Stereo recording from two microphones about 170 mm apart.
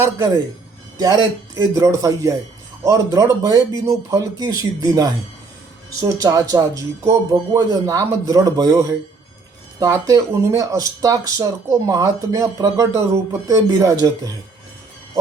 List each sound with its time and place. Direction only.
0.9 s speech: 20° right (ahead or behind)